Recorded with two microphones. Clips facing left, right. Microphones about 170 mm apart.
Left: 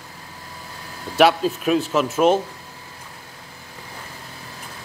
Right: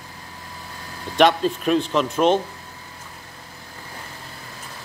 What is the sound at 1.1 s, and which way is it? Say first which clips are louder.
Speech: left 1 dB; 5° left (ahead or behind).